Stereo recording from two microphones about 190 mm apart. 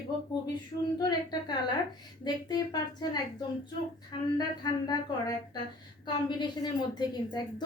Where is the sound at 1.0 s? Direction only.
20° left (ahead or behind).